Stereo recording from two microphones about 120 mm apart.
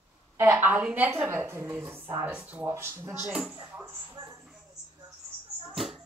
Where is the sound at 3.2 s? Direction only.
10° right (ahead or behind).